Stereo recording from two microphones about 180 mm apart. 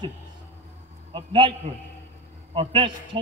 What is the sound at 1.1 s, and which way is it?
Speech, 25° right (ahead or behind).